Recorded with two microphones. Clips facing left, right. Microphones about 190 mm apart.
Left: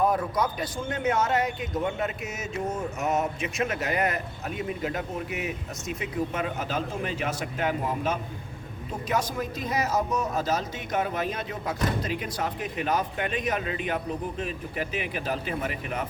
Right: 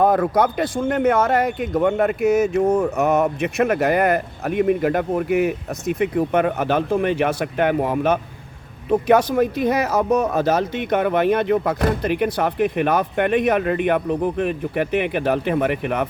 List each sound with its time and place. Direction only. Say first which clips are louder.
0.0 s speech: right 8 dB; 80° right